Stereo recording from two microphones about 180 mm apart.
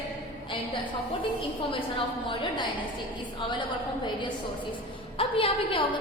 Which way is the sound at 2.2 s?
30° left (ahead or behind).